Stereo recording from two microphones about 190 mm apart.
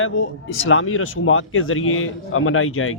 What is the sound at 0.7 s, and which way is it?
A man's voice, 90° left.